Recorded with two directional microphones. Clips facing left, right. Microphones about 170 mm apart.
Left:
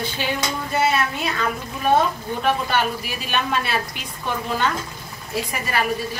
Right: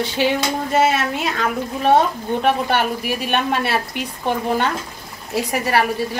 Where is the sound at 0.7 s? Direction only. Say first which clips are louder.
Right 3 dB; 90° right.